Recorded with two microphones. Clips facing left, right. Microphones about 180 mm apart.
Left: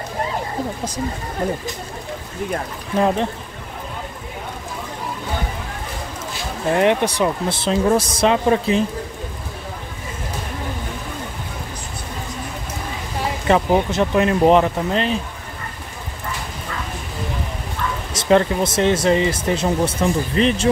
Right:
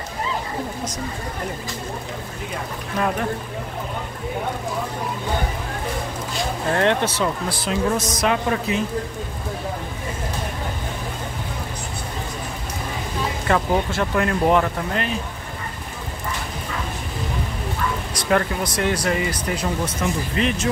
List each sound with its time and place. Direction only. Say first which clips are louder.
6.7 s speech: left 4 dB; 15° left (ahead or behind)
13.5 s speech: left 4 dB; 20° left (ahead or behind)
18.1 s speech: left 7 dB; 25° left (ahead or behind)